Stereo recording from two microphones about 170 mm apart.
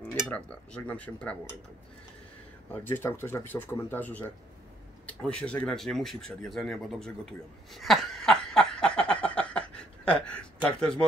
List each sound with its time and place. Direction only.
0.3 s speech: 10° left (ahead or behind)
2.7 s speech: 10° left (ahead or behind)
7.7 s a sound: centre (ahead or behind)